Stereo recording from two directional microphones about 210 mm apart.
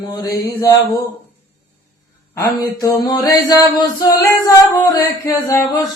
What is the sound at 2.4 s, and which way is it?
Speech, 15° left (ahead or behind).